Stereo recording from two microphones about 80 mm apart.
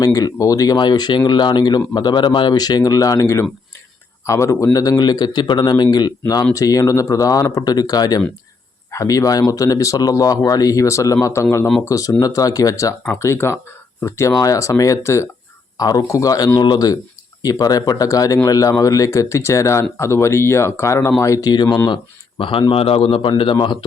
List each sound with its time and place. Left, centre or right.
0.0 s a man's voice: left
2.6 s a man's voice: left
13.1 s speech: left
15.8 s a man's voice: left
21.5 s speech: left
21.8 s speech: left